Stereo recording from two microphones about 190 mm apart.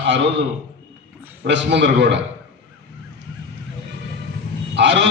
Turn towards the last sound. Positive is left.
turn(degrees=-70)  # may be behind; listen again after turning